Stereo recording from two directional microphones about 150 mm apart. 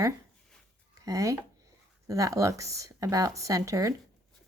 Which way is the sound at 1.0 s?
20° right (ahead or behind).